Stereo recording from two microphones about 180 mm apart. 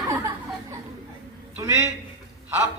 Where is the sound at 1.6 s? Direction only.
15° right (ahead or behind).